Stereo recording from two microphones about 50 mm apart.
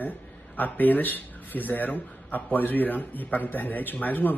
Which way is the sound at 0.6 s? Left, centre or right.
Left.